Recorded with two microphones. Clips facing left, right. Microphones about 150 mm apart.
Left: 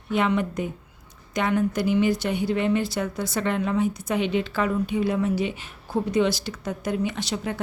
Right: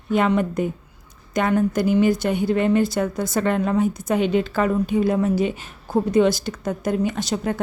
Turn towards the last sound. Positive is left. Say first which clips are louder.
# right 5 dB
turn(degrees=-45)  # may be behind; listen again after turning